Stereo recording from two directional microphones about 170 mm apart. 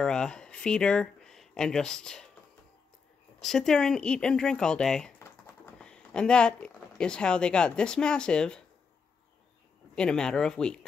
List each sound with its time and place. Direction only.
0.0 s speech: 5° left (ahead or behind)
3.3 s speech: 5° left (ahead or behind)
9.9 s speech: 5° left (ahead or behind)